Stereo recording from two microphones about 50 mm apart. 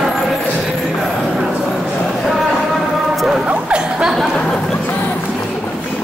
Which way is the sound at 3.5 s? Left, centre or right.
Right.